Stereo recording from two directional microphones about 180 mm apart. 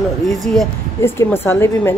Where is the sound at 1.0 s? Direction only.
15° left (ahead or behind).